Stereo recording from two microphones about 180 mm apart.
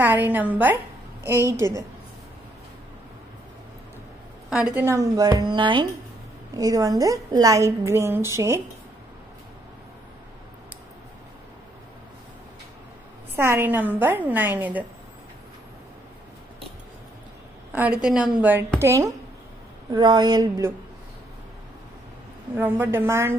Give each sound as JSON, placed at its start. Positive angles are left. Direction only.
{"t": 0.0, "sound": "a woman's voice", "side_deg": -10}
{"t": 4.5, "sound": "a woman's voice", "side_deg": -5}
{"t": 4.8, "sound": "a woman's voice", "side_deg": -15}
{"t": 13.4, "sound": "a woman's voice", "side_deg": -15}
{"t": 17.7, "sound": "a woman's voice", "side_deg": -5}
{"t": 18.8, "sound": "a woman's voice", "side_deg": -15}
{"t": 22.6, "sound": "a woman's voice", "side_deg": -10}